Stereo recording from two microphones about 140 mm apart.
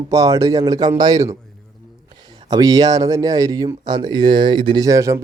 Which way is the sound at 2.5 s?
25° right (ahead or behind).